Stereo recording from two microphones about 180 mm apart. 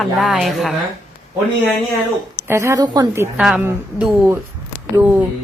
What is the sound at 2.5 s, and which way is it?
Speech, 15° right (ahead or behind).